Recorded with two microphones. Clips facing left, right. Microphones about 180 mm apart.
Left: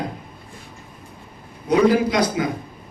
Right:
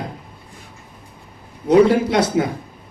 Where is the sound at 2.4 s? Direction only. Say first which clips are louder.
Right 4 dB; 45° right (ahead or behind).